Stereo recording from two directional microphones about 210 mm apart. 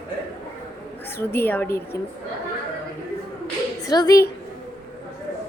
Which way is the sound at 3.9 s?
15° left (ahead or behind).